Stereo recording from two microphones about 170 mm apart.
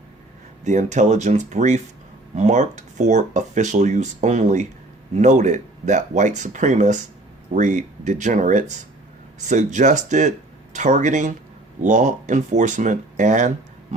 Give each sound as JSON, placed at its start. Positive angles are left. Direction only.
{"t": 0.6, "sound": "speech", "side_deg": -45}